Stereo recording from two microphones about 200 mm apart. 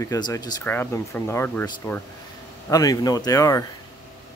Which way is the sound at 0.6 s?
10° left (ahead or behind).